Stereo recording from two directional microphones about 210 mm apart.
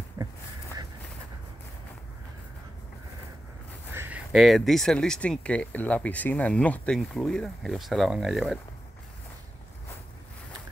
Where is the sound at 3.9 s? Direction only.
10° right (ahead or behind).